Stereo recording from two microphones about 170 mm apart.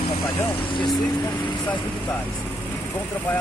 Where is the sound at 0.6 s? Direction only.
30° left (ahead or behind).